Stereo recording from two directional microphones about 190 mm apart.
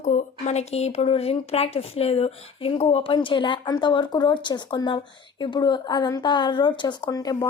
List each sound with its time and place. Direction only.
0.0 s speech: 40° left (ahead or behind); by 7.4 s 20° left (ahead or behind)